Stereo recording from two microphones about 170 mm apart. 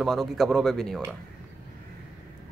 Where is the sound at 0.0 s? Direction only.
Centre (ahead or behind).